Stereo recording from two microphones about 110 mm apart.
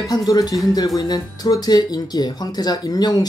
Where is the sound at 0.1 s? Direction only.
35° left (ahead or behind).